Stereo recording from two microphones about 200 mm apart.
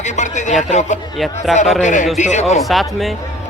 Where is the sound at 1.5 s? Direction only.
Centre (ahead or behind).